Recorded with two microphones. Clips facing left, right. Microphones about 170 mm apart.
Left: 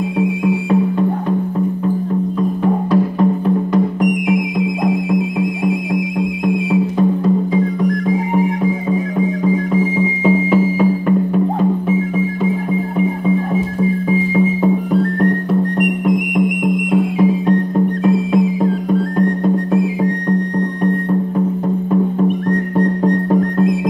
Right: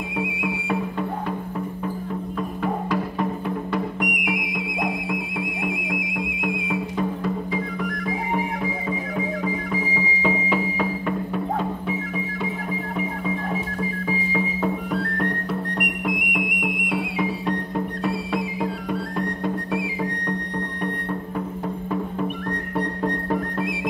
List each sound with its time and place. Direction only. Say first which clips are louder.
3.4 s music: left 11 dB; 40° left (ahead or behind)
16.9 s music: left 12 dB; 45° left (ahead or behind)
19.1 s music: left 11 dB; 45° left (ahead or behind)